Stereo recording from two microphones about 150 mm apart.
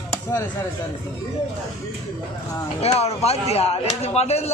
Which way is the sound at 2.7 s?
45° left (ahead or behind).